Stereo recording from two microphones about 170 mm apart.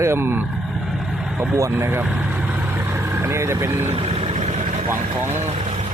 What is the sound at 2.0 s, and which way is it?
Vehicle, 5° right (ahead or behind).